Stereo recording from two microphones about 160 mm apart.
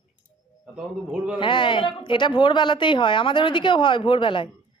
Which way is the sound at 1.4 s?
30° left (ahead or behind).